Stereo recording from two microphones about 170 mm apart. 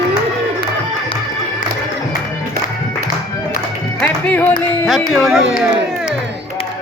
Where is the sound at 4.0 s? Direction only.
10° left (ahead or behind).